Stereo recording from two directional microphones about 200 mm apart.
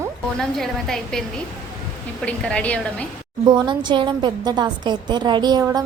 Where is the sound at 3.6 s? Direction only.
25° right (ahead or behind).